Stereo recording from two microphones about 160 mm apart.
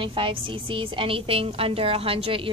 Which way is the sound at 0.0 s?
35° right (ahead or behind).